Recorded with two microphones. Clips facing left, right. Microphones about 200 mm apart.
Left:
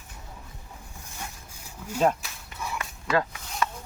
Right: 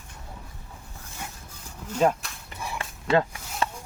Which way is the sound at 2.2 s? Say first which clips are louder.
Right 1 dB; 5° left (ahead or behind).